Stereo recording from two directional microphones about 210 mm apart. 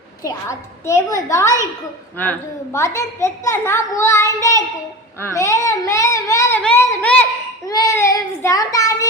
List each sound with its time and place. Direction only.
0.3 s a child's voice: 15° left (ahead or behind)
2.7 s a child's voice: 15° left (ahead or behind)